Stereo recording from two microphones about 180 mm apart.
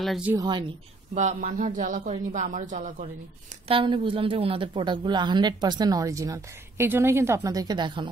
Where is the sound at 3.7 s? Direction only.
30° right (ahead or behind).